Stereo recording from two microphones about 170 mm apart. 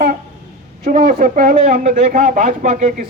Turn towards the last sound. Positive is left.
turn(degrees=-50)  # may be behind; listen again after turning